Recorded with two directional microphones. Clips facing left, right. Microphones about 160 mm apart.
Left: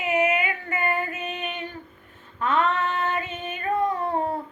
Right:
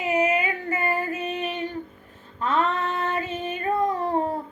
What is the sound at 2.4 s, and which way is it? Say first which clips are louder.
Female singing: left 1 dB; 35° right (ahead or behind).